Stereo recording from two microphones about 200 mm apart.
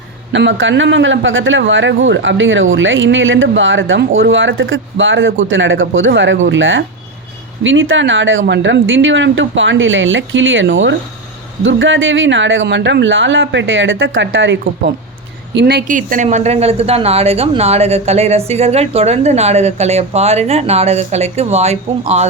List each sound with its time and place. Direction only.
0.3 s a man's voice: 65° right (ahead or behind)
15.5 s a woman's voice: 55° right (ahead or behind); by 22.3 s 35° right (ahead or behind)